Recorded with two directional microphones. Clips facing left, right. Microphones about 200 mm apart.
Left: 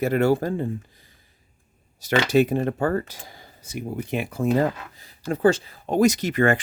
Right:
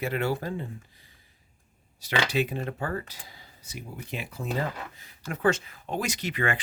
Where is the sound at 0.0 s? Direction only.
45° left (ahead or behind).